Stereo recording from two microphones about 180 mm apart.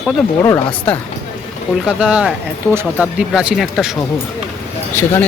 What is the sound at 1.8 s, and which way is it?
Speech, 5° right (ahead or behind).